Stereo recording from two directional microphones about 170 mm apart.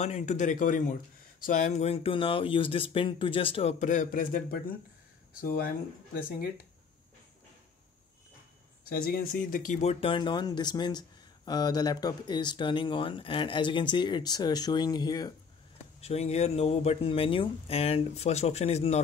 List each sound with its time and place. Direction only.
0.0 s speech: 45° left (ahead or behind)
3.8 s a man's voice: 50° left (ahead or behind)
8.8 s speech: 60° left (ahead or behind); by 15.3 s 25° left (ahead or behind)
16.0 s speech: 40° left (ahead or behind)